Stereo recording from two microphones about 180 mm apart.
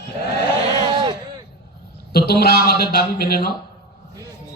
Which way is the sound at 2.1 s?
60° left (ahead or behind).